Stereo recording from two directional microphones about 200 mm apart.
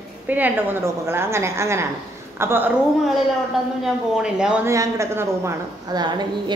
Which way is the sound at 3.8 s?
5° right (ahead or behind).